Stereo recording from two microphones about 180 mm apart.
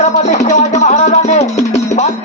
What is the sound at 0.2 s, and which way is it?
Music, 40° left (ahead or behind).